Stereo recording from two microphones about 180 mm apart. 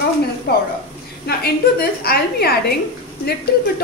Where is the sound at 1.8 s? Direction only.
60° left (ahead or behind).